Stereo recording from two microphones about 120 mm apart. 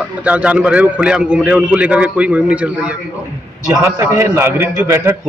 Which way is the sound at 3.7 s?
25° right (ahead or behind).